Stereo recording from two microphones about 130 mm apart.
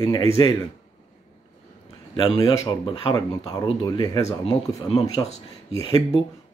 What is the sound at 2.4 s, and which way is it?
Speech, 35° left (ahead or behind).